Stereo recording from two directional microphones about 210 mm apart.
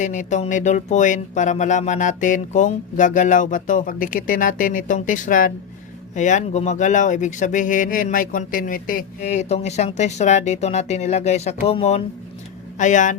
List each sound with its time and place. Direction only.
0.0 s speech: 35° left (ahead or behind)